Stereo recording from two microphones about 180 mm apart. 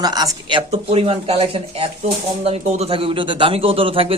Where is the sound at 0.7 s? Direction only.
35° right (ahead or behind).